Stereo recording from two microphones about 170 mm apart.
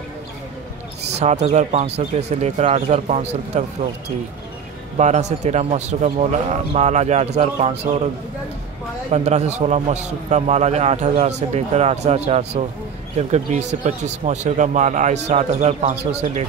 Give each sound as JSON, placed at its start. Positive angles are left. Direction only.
{"t": 1.2, "sound": "a man's voice", "side_deg": -45}
{"t": 4.9, "sound": "a man's voice", "side_deg": -45}
{"t": 9.1, "sound": "a man's voice", "side_deg": -40}